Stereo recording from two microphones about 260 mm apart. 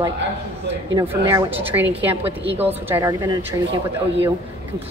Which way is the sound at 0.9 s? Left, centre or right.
Centre.